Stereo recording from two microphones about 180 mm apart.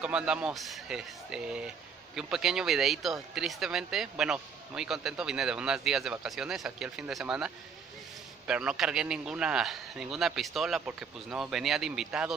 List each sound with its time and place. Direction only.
0.0 s speech: 5° right (ahead or behind)